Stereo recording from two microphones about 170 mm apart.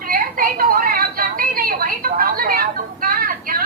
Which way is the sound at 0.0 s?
60° right (ahead or behind).